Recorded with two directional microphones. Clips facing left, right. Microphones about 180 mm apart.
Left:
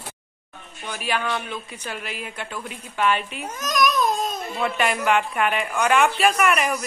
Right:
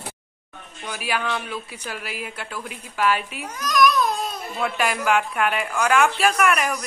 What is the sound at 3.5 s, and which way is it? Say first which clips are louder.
Babbling: right 3 dB; 20° left (ahead or behind).